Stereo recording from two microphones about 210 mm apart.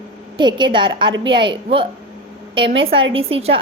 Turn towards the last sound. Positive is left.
turn(degrees=-25)  # may be behind; listen again after turning